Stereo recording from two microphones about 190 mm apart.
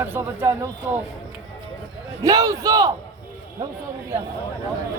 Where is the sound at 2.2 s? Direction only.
20° right (ahead or behind).